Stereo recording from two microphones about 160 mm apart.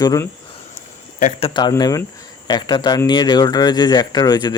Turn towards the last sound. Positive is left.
turn(degrees=25)  # may be behind; listen again after turning